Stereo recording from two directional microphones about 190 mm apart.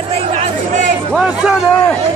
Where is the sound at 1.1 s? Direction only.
5° right (ahead or behind).